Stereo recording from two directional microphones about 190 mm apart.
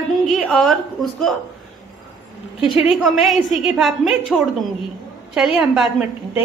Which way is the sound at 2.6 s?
Centre (ahead or behind).